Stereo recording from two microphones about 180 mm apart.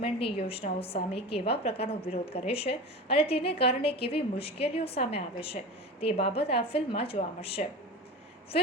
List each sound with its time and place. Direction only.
0.0 s a woman's voice: 30° left (ahead or behind)